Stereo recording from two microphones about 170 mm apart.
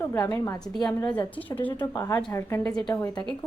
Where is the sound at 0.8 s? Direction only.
5° left (ahead or behind).